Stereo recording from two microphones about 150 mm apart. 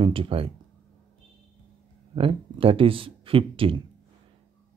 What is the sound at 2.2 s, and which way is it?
Speech, 35° right (ahead or behind).